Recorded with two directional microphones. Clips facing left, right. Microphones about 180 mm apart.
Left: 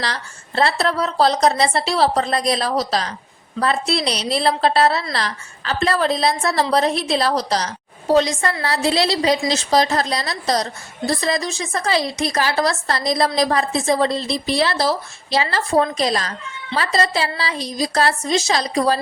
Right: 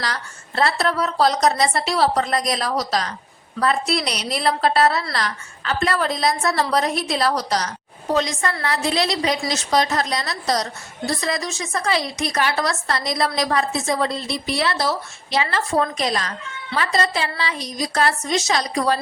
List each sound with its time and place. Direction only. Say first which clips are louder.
0.0 s a woman's voice: left 1 dB; 30° left (ahead or behind)